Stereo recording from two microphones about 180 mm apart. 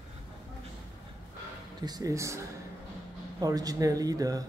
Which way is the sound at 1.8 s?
20° right (ahead or behind).